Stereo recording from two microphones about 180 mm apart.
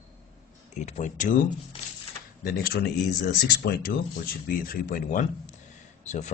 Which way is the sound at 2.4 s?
55° left (ahead or behind).